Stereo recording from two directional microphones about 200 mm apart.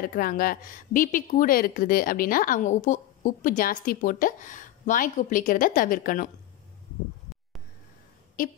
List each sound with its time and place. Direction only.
0.0 s a woman's voice: 45° left (ahead or behind)